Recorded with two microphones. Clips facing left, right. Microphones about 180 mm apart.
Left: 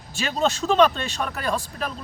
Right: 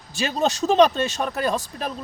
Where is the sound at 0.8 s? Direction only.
40° right (ahead or behind).